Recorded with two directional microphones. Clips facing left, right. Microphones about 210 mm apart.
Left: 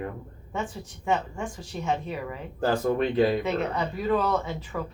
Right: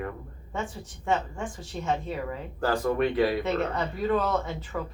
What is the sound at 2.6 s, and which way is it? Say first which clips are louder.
Speech: left 1 dB; 20° left (ahead or behind).